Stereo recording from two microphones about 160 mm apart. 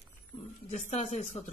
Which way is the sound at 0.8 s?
45° left (ahead or behind).